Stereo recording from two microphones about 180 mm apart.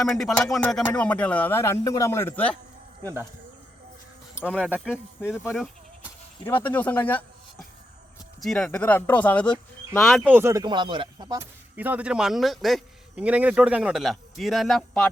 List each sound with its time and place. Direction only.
0.0 s a man's voice: centre (ahead or behind)
4.4 s speech: 5° right (ahead or behind)
4.7 s a man's voice: 5° left (ahead or behind)
5.5 s goat: centre (ahead or behind)
6.4 s a man's voice: 10° left (ahead or behind)
8.4 s a man's voice: centre (ahead or behind)
10.3 s speech: 15° right (ahead or behind)
11.8 s a man's voice: 10° right (ahead or behind)